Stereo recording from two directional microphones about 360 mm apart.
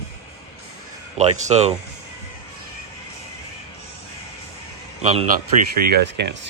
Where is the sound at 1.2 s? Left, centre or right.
Centre.